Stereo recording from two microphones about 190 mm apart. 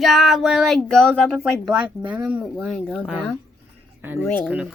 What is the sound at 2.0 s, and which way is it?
Speech, 5° right (ahead or behind).